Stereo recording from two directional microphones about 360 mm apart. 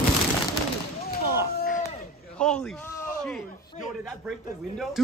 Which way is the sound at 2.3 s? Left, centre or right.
Centre.